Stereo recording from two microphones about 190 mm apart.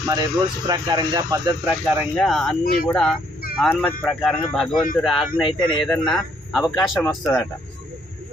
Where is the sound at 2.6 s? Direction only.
50° left (ahead or behind).